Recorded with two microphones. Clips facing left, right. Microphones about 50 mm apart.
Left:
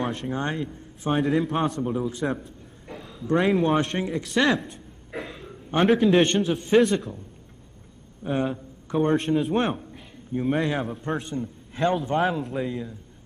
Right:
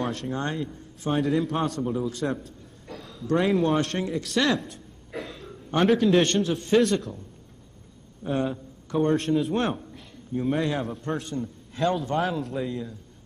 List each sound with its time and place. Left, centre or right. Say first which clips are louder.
0.0 s a man's voice: left 1 dB; centre
3.7 s speech: left 1 dB; centre
5.1 s a sound: left 1 dB; centre
6.4 s speech: left 1 dB; centre
6.7 s a man's voice: left 2 dB; centre
8.2 s a sound: left 1 dB; centre
9.0 s a man's voice: left 1 dB; centre